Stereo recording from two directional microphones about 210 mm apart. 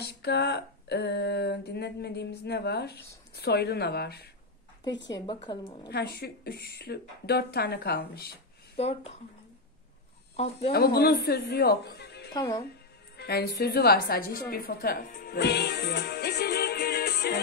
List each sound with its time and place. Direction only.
0.0 s a sound: 50° left (ahead or behind)
3.3 s speech: 50° left (ahead or behind)
5.1 s speech: 20° left (ahead or behind)
5.9 s speech: 50° left (ahead or behind)
8.7 s speech: 30° left (ahead or behind)
10.3 s speech: 30° left (ahead or behind)
10.7 s speech: 50° left (ahead or behind)
12.4 s speech: 15° left (ahead or behind)
13.2 s a woman's voice: 50° left (ahead or behind)